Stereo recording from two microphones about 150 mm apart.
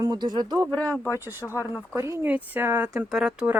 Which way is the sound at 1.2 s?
15° right (ahead or behind).